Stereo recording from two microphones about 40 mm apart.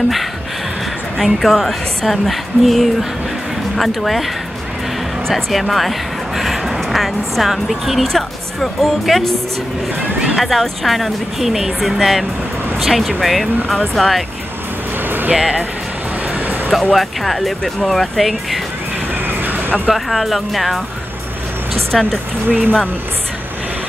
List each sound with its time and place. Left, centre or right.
1.2 s speech: centre
5.3 s speech: centre
10.3 s speech: centre
15.0 s music: right
16.3 s music: right
16.9 s speech: centre
19.2 s vehicle: right
19.9 s speech: centre
21.9 s speech: centre
22.5 s speech: left